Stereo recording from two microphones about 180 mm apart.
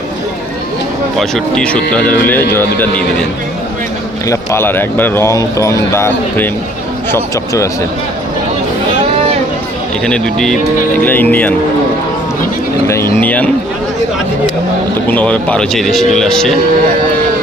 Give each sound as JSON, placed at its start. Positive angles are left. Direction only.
{"t": 1.2, "sound": "speech", "side_deg": 5}
{"t": 4.3, "sound": "speech", "side_deg": 15}
{"t": 10.1, "sound": "speech", "side_deg": 5}
{"t": 13.1, "sound": "speech", "side_deg": 10}
{"t": 15.1, "sound": "speech", "side_deg": 5}